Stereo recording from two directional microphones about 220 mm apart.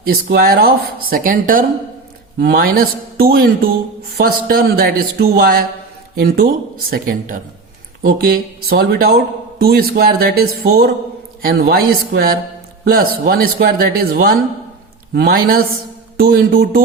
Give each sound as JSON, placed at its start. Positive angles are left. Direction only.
{"t": 0.0, "sound": "speech", "side_deg": -45}
{"t": 8.7, "sound": "speech", "side_deg": -45}